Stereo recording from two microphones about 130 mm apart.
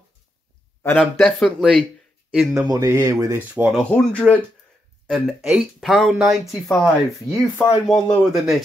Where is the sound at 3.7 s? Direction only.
5° left (ahead or behind).